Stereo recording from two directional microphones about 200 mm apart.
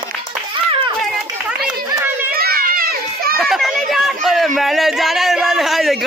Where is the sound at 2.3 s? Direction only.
50° right (ahead or behind).